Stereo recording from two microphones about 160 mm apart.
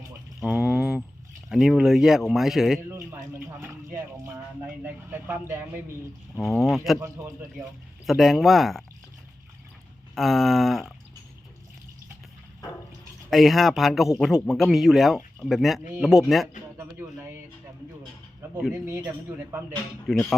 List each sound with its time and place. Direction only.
0.3 s mantra: 5° right (ahead or behind)
1.5 s speech: centre (ahead or behind)
2.9 s a sound: 15° right (ahead or behind)
4.6 s speech: 10° right (ahead or behind)
6.3 s speech: centre (ahead or behind)
7.0 s a man's voice: 20° right (ahead or behind)
8.0 s speech: centre (ahead or behind)
10.2 s speech: centre (ahead or behind)
13.3 s speech: centre (ahead or behind)
16.7 s a sound: 15° right (ahead or behind)
18.4 s a sound: 15° right (ahead or behind)
20.1 s speech: centre (ahead or behind)